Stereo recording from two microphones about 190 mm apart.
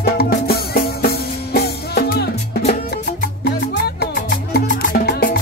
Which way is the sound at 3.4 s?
55° left (ahead or behind).